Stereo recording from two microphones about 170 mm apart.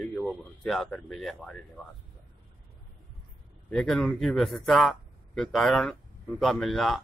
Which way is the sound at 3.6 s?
5° left (ahead or behind).